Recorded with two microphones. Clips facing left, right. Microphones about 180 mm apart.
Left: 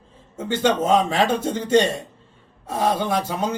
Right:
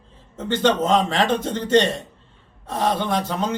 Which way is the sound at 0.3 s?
10° left (ahead or behind).